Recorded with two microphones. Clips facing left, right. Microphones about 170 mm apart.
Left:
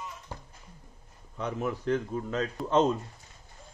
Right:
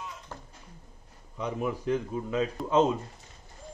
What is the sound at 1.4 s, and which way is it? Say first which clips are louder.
Speech: right 1 dB; 10° right (ahead or behind).